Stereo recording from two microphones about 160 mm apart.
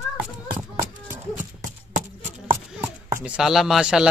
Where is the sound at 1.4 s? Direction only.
55° right (ahead or behind).